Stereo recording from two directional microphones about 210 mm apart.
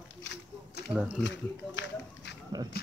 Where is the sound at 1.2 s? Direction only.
60° left (ahead or behind).